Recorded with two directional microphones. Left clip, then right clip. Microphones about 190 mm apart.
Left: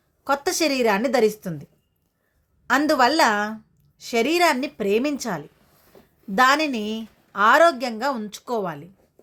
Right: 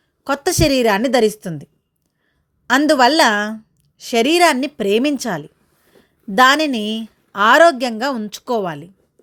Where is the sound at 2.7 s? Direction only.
40° right (ahead or behind).